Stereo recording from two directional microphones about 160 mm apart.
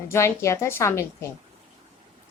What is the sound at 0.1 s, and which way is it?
Speech, 15° left (ahead or behind).